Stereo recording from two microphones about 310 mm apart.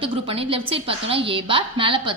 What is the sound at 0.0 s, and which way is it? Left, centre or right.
A woman's voice, centre.